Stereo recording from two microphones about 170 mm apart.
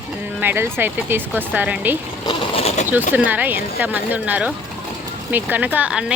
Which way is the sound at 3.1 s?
10° right (ahead or behind).